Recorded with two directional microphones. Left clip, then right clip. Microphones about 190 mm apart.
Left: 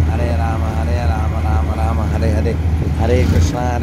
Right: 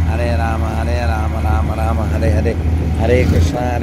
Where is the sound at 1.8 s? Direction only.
10° left (ahead or behind).